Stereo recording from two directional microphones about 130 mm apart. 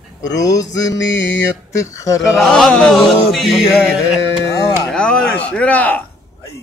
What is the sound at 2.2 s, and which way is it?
Chant, centre (ahead or behind).